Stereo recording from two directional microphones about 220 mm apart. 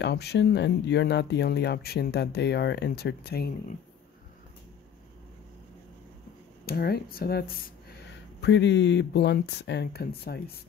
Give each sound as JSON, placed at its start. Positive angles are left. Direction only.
{"t": 0.0, "sound": "speech", "side_deg": 50}
{"t": 6.6, "sound": "speech", "side_deg": 45}